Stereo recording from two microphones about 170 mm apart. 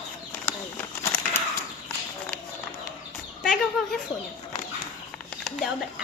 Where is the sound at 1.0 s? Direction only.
20° left (ahead or behind).